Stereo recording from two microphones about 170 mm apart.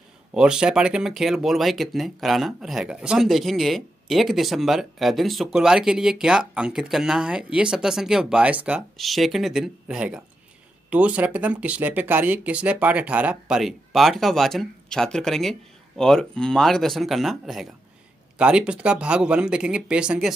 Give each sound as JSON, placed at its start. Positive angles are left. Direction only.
{"t": 0.3, "sound": "speech", "side_deg": -5}